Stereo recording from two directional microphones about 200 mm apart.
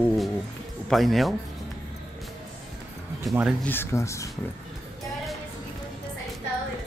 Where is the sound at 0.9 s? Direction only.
Centre (ahead or behind).